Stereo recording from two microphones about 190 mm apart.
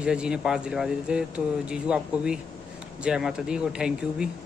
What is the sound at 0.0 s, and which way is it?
A man's voice, 5° right (ahead or behind).